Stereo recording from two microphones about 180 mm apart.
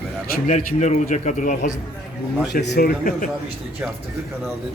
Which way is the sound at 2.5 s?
55° left (ahead or behind).